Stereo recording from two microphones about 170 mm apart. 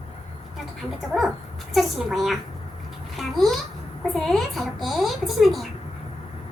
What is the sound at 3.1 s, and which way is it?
Babbling, centre (ahead or behind).